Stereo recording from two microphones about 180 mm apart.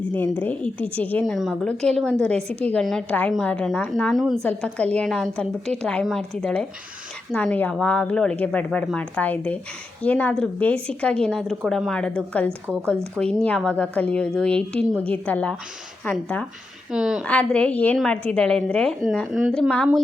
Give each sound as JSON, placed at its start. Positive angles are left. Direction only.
{"t": 0.1, "sound": "a woman's voice", "side_deg": 10}
{"t": 16.9, "sound": "a woman's voice", "side_deg": -5}